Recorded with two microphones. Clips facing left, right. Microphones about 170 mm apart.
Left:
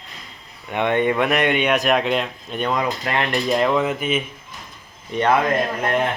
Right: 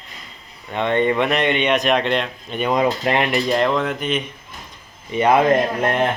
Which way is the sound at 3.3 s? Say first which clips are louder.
Even; centre (ahead or behind).